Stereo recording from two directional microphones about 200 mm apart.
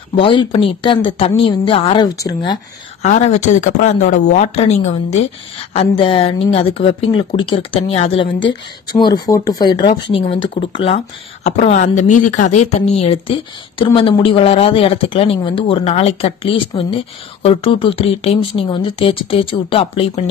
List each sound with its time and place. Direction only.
0.1 s a woman's voice: 25° left (ahead or behind)
3.0 s a woman's voice: 35° left (ahead or behind)